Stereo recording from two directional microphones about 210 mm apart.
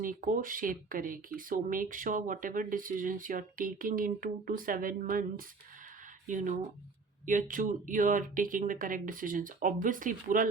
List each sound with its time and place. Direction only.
0.0 s speech: 40° right (ahead or behind)
6.2 s speech: 35° right (ahead or behind)